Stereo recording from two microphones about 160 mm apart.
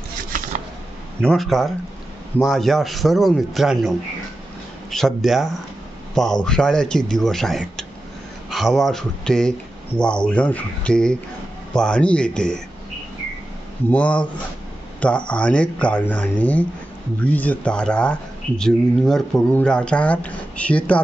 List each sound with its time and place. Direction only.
1.2 s a man's voice: centre (ahead or behind)
4.9 s a man's voice: centre (ahead or behind)
13.8 s speech: 10° left (ahead or behind)